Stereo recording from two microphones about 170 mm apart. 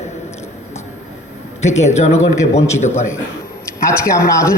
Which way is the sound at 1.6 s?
40° left (ahead or behind).